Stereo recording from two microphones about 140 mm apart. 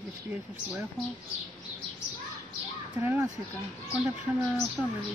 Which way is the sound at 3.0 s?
15° right (ahead or behind).